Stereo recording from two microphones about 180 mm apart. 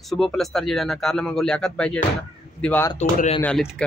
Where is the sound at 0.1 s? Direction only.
Centre (ahead or behind).